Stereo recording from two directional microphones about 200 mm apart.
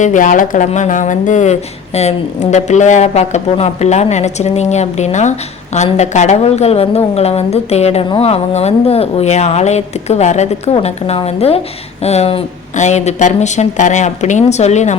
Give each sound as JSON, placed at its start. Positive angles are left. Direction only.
{"t": 0.0, "sound": "a woman's voice", "side_deg": 40}